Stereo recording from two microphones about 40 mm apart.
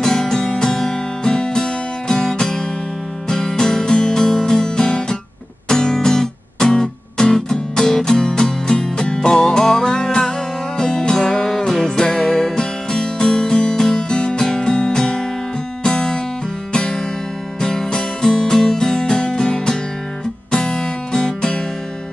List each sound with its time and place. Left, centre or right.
0.0 s music: centre